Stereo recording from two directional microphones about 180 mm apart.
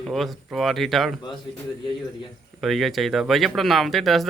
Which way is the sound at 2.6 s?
Centre (ahead or behind).